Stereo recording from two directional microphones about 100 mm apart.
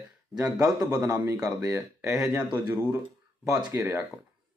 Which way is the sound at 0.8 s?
20° right (ahead or behind).